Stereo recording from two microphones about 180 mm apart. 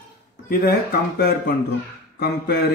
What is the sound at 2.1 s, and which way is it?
Speech, 65° left (ahead or behind).